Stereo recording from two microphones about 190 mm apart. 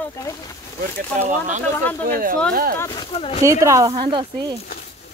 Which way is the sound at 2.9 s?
25° left (ahead or behind).